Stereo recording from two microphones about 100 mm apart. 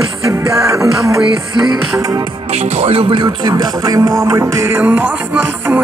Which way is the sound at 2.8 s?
75° right (ahead or behind).